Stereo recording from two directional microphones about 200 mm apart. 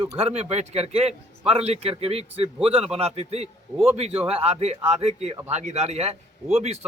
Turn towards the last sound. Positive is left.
turn(degrees=-30)  # may be behind; listen again after turning